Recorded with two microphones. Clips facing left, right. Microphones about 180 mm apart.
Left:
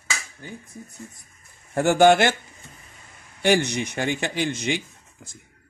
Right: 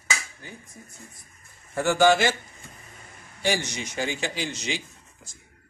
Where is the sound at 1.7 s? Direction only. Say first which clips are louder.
Left 4 dB; 55° left (ahead or behind).